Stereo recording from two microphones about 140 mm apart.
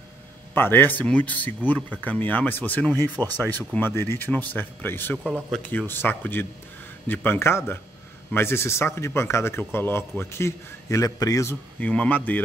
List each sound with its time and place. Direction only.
0.6 s speech: 15° left (ahead or behind)
5.2 s speech: 5° right (ahead or behind)
5.7 s speech: 15° left (ahead or behind)
11.8 s speech: 10° left (ahead or behind)